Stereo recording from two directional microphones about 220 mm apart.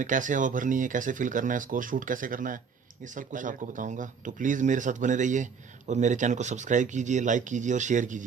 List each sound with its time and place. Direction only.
0.0 s speech: 35° right (ahead or behind)